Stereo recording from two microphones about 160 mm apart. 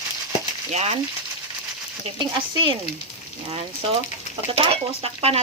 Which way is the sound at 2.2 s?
30° right (ahead or behind).